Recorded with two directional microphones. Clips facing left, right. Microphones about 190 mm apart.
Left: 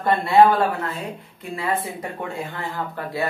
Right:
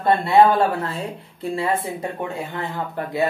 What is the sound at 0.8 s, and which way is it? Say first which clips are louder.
Speech: right 1 dB; 30° right (ahead or behind).